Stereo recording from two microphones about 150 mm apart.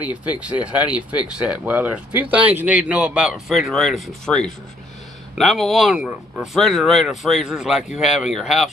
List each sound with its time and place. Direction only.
0.0 s speech: 10° right (ahead or behind)